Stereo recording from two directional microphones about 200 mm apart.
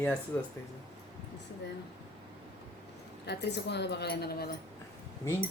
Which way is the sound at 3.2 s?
55° left (ahead or behind).